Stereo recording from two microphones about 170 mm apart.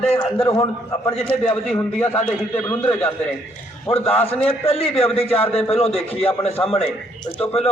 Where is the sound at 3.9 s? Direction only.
35° left (ahead or behind).